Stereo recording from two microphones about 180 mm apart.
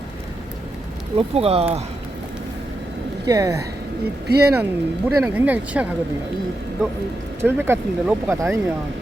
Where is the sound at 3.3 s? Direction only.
20° right (ahead or behind).